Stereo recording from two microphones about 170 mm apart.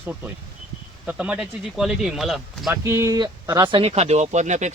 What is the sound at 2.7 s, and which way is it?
Speech, 15° right (ahead or behind).